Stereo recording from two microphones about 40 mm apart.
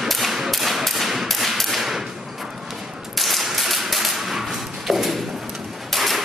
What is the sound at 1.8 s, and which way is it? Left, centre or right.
Thump, centre.